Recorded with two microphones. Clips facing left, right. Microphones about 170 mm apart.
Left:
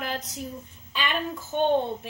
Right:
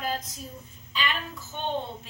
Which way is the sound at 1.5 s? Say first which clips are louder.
Left 10 dB; 55° left (ahead or behind).